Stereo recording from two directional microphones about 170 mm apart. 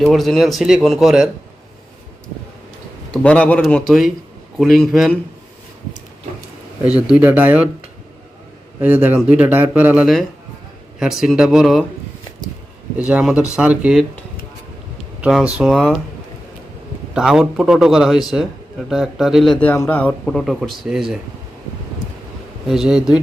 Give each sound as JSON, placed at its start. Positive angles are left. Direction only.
{"t": 0.0, "sound": "a man's voice", "side_deg": 0}
{"t": 3.1, "sound": "a man's voice", "side_deg": 5}
{"t": 6.8, "sound": "speech", "side_deg": -5}
{"t": 8.8, "sound": "a man's voice", "side_deg": -10}
{"t": 13.0, "sound": "a man's voice", "side_deg": -5}
{"t": 15.2, "sound": "a man's voice", "side_deg": -5}
{"t": 17.2, "sound": "a man's voice", "side_deg": -5}
{"t": 22.6, "sound": "a man's voice", "side_deg": 0}